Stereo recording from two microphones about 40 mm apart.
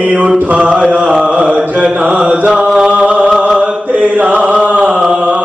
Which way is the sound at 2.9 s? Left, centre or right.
Right.